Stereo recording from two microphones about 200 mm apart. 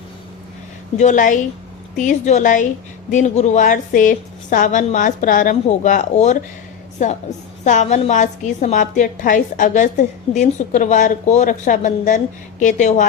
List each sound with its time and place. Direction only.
0.9 s a woman's voice: 40° left (ahead or behind)